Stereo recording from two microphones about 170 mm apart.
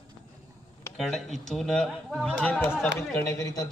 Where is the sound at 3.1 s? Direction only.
20° left (ahead or behind).